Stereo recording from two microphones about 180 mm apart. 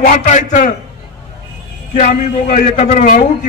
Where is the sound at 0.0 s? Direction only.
45° left (ahead or behind).